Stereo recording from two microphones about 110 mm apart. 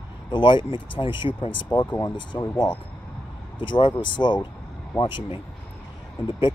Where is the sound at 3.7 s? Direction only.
45° left (ahead or behind).